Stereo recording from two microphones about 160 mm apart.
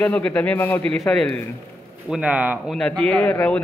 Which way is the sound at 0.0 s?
10° left (ahead or behind).